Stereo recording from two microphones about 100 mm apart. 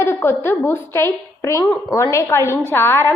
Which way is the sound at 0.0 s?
25° left (ahead or behind).